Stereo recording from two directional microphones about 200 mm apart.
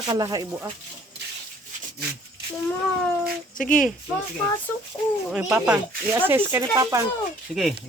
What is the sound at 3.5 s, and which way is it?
Speech, 40° left (ahead or behind).